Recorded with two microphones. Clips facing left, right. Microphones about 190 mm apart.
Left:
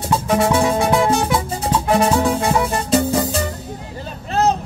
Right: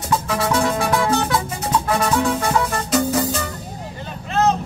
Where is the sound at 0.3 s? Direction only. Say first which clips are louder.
Left 6 dB; 25° left (ahead or behind).